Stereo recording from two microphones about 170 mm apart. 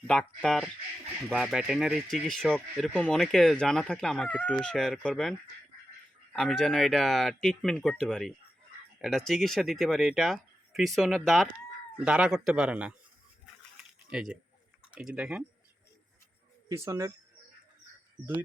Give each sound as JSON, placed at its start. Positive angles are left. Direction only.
{"t": 0.1, "sound": "speech", "side_deg": 5}
{"t": 6.3, "sound": "speech", "side_deg": 0}
{"t": 14.1, "sound": "speech", "side_deg": 0}
{"t": 16.6, "sound": "speech", "side_deg": -15}